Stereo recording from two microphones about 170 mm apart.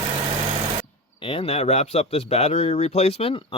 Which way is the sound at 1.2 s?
30° left (ahead or behind).